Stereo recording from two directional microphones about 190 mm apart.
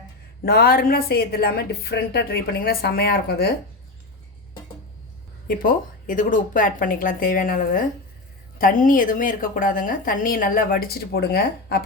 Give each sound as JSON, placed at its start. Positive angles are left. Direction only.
{"t": 0.4, "sound": "a woman's voice", "side_deg": 55}
{"t": 5.5, "sound": "a woman's voice", "side_deg": 45}